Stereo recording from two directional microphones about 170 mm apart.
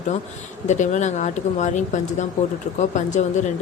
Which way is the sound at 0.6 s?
45° left (ahead or behind).